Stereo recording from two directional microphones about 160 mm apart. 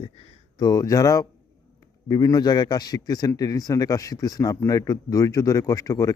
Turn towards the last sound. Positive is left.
turn(degrees=20)  # may be behind; listen again after turning